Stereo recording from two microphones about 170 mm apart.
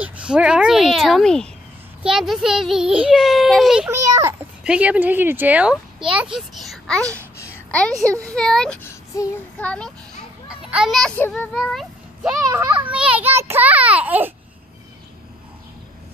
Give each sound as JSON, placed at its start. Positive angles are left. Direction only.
{"t": 0.0, "sound": "a child's voice", "side_deg": -5}
{"t": 3.9, "sound": "a child's voice", "side_deg": -15}
{"t": 7.4, "sound": "a sound", "side_deg": 5}
{"t": 8.0, "sound": "a child's voice", "side_deg": -20}
{"t": 8.3, "sound": "a child's voice", "side_deg": 5}
{"t": 9.1, "sound": "child singing", "side_deg": 20}
{"t": 9.6, "sound": "a child's voice", "side_deg": 5}
{"t": 10.5, "sound": "a child's voice", "side_deg": -5}
{"t": 11.5, "sound": "a child's voice", "side_deg": 0}
{"t": 12.4, "sound": "speech", "side_deg": -20}
{"t": 12.9, "sound": "speech", "side_deg": -5}